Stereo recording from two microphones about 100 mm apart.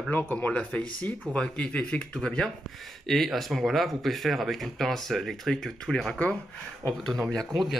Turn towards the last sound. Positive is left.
turn(degrees=5)  # may be behind; listen again after turning